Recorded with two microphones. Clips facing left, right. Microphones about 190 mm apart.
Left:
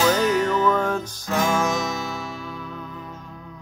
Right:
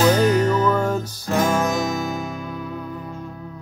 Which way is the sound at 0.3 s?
40° right (ahead or behind).